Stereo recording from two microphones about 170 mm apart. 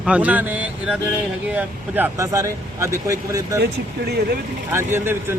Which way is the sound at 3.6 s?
75° right (ahead or behind).